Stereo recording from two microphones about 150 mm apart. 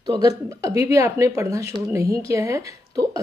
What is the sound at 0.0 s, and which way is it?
Speech, 30° right (ahead or behind).